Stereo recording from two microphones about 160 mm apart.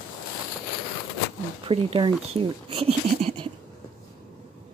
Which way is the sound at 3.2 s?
40° right (ahead or behind).